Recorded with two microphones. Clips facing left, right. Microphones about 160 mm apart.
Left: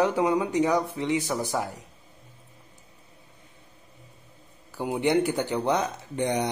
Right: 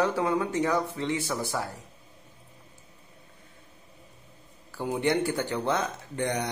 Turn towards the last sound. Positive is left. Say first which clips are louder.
# left 3 dB
turn(degrees=20)  # may be behind; listen again after turning